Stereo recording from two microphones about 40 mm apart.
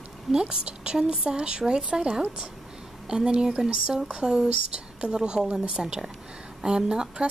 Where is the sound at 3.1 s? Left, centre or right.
Right.